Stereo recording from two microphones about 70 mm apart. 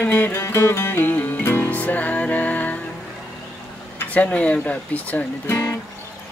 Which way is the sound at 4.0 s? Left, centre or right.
Left.